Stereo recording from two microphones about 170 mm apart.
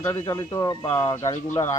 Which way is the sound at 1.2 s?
20° left (ahead or behind).